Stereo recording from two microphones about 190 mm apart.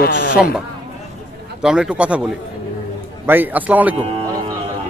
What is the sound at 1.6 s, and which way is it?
Speech, 5° right (ahead or behind).